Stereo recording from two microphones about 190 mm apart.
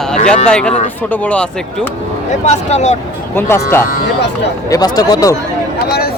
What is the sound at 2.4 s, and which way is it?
Speech, 35° left (ahead or behind).